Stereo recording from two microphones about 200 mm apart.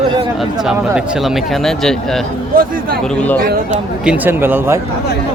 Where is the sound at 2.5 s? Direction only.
45° right (ahead or behind).